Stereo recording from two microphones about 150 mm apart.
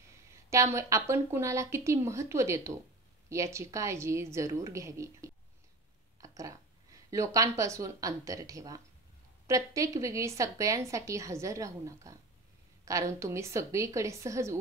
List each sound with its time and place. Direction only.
0.7 s a woman's voice: 20° right (ahead or behind)